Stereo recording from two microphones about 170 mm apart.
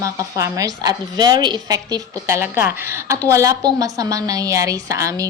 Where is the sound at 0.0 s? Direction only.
20° right (ahead or behind).